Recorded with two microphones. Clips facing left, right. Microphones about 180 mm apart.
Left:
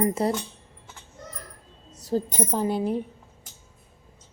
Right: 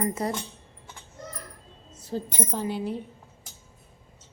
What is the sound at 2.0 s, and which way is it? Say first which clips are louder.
Speech: left 5 dB; 40° left (ahead or behind).